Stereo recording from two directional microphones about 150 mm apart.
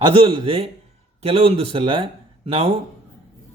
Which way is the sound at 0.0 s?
35° right (ahead or behind).